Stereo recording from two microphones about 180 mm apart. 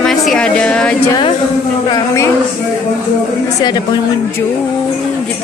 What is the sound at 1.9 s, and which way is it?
Speech, 15° left (ahead or behind).